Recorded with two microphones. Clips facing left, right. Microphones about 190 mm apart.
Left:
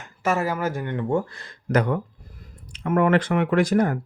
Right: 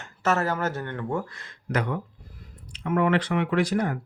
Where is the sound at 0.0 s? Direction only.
10° left (ahead or behind).